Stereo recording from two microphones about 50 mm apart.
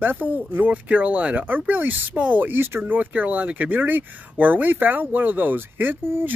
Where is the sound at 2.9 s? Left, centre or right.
Right.